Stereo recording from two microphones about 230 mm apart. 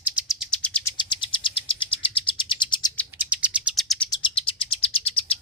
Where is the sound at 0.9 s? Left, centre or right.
Centre.